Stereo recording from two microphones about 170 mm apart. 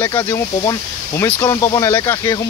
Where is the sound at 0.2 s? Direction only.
15° left (ahead or behind).